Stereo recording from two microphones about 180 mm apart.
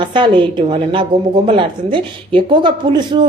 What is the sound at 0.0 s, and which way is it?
A woman's voice, 25° right (ahead or behind).